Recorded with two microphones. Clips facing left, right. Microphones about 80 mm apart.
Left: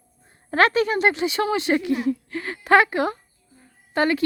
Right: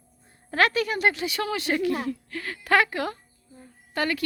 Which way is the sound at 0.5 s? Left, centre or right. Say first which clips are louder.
Left 4 dB; left.